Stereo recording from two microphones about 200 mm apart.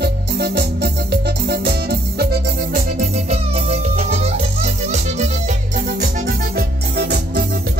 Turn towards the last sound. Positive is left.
turn(degrees=-55)  # may be behind; listen again after turning